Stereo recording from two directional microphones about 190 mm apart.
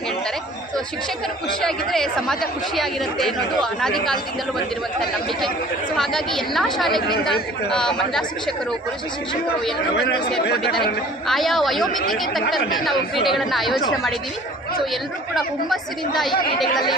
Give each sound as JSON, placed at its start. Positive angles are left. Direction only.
{"t": 1.6, "sound": "speech", "side_deg": 0}
{"t": 6.0, "sound": "speech", "side_deg": 0}
{"t": 9.9, "sound": "speech", "side_deg": 60}
{"t": 11.3, "sound": "speech", "side_deg": 0}
{"t": 15.4, "sound": "speech", "side_deg": 0}